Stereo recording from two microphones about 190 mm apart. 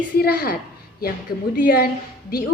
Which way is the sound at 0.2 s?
55° left (ahead or behind).